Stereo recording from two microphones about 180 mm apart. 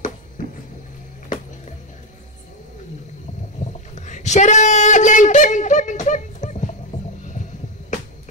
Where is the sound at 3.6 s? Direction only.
40° left (ahead or behind).